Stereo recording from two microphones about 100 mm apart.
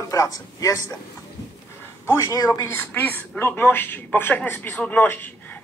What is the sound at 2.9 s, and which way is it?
A man's voice, 20° left (ahead or behind).